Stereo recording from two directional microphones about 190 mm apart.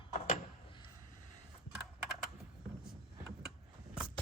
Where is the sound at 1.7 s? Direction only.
5° right (ahead or behind).